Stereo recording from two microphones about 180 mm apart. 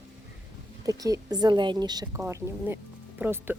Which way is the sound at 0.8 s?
20° right (ahead or behind).